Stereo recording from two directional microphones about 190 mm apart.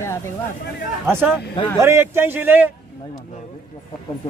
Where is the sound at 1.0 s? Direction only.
10° right (ahead or behind).